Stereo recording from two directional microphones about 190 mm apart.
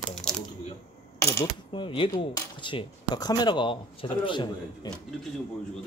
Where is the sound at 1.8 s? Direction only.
25° left (ahead or behind).